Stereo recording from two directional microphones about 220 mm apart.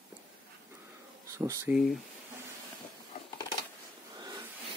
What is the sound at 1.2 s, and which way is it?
Speech, 15° right (ahead or behind).